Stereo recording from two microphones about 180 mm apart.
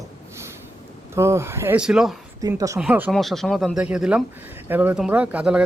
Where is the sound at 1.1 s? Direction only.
15° right (ahead or behind).